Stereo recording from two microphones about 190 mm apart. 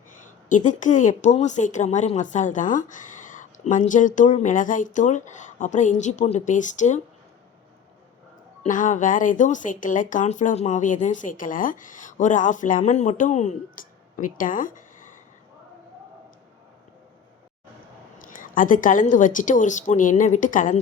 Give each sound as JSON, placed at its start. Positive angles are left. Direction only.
{"t": 0.4, "sound": "a woman's voice", "side_deg": 40}
{"t": 8.6, "sound": "a woman's voice", "side_deg": 40}
{"t": 18.2, "sound": "a woman's voice", "side_deg": 45}